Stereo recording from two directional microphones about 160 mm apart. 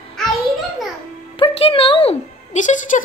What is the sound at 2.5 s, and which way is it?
Speech, 50° left (ahead or behind).